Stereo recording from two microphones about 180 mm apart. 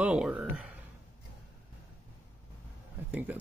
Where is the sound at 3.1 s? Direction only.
10° right (ahead or behind).